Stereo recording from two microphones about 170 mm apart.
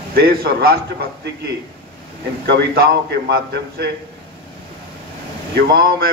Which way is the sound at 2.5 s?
75° right (ahead or behind).